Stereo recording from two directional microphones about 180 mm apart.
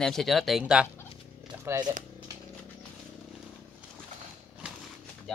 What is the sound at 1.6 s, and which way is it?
Speech, 20° right (ahead or behind).